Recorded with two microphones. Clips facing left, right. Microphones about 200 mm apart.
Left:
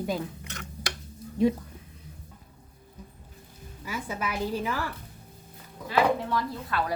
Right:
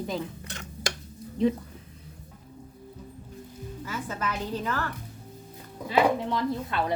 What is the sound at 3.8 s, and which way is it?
A woman's voice, 10° left (ahead or behind).